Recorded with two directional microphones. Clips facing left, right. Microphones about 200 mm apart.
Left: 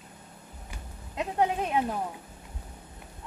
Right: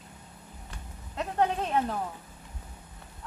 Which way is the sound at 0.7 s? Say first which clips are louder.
Left 1 dB; 10° left (ahead or behind).